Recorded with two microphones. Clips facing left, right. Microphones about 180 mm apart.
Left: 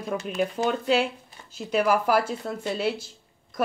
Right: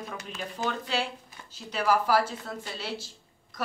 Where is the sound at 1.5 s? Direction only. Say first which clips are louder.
Left 4 dB; 55° left (ahead or behind).